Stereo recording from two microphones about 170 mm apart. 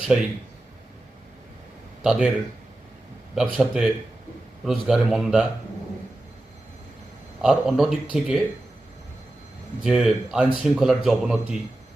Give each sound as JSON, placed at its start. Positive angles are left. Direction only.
{"t": 2.0, "sound": "a man's voice", "side_deg": -5}
{"t": 3.3, "sound": "a man's voice", "side_deg": 0}
{"t": 7.4, "sound": "a man's voice", "side_deg": 0}
{"t": 9.8, "sound": "a man's voice", "side_deg": 0}